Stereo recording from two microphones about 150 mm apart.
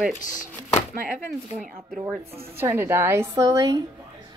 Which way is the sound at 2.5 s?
15° right (ahead or behind).